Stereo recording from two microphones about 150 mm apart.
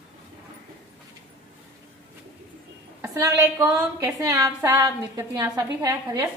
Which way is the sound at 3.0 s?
20° right (ahead or behind).